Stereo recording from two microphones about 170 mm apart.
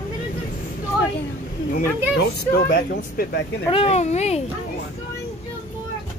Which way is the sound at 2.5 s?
65° left (ahead or behind).